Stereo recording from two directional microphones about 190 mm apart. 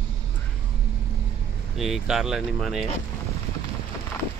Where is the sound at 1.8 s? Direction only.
Centre (ahead or behind).